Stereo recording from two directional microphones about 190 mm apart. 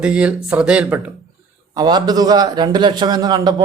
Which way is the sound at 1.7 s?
20° right (ahead or behind).